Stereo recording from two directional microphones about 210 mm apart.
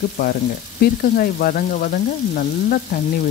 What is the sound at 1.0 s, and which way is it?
Frying, 45° left (ahead or behind).